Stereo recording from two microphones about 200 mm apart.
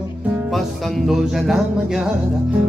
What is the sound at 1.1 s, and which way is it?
Speech, centre (ahead or behind).